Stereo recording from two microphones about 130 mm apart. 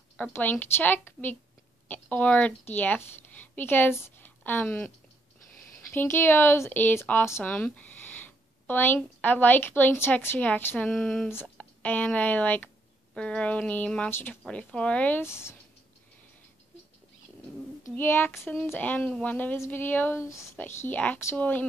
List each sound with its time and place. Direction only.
0.2 s a woman's voice: 10° left (ahead or behind)
17.8 s speech: 15° left (ahead or behind)